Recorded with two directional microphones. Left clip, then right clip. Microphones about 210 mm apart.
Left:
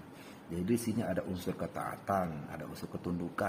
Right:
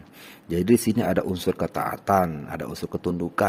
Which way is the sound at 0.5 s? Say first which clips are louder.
Right 13 dB; 45° right (ahead or behind).